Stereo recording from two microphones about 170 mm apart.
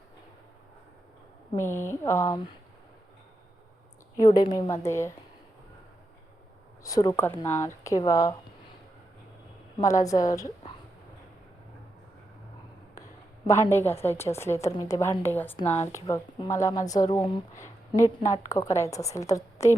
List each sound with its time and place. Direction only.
1.5 s a woman's voice: 15° left (ahead or behind)
4.2 s a woman's voice: 25° left (ahead or behind)
6.8 s a woman's voice: 20° left (ahead or behind)
9.8 s a woman's voice: 20° left (ahead or behind)
13.5 s a woman's voice: 15° left (ahead or behind)